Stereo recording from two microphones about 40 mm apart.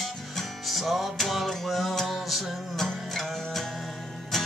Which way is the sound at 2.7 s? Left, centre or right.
Centre.